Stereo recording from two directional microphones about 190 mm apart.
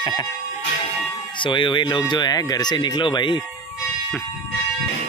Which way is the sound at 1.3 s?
25° left (ahead or behind).